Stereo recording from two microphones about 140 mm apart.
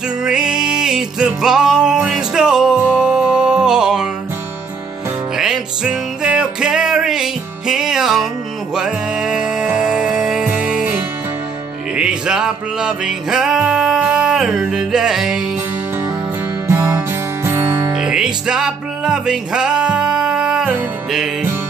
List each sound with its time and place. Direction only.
0.2 s music: 5° right (ahead or behind)
5.4 s music: 5° right (ahead or behind)
16.6 s music: 20° right (ahead or behind)
17.9 s music: 5° right (ahead or behind)